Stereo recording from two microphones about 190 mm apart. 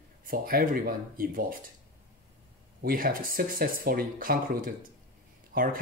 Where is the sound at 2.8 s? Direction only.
50° right (ahead or behind).